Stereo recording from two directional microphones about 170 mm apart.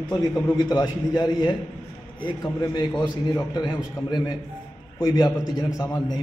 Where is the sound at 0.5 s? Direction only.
25° left (ahead or behind).